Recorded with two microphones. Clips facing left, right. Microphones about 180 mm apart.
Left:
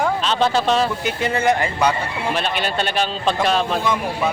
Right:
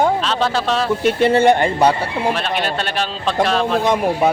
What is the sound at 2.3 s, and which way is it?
A man's voice, centre (ahead or behind).